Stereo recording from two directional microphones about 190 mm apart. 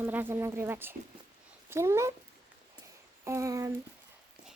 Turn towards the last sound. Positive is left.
turn(degrees=-15)  # may be behind; listen again after turning